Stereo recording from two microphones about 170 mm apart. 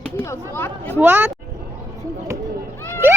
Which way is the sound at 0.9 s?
10° right (ahead or behind).